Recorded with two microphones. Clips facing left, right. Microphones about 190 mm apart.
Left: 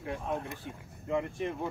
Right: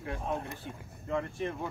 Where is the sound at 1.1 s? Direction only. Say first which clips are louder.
Left 1 dB; 15° left (ahead or behind).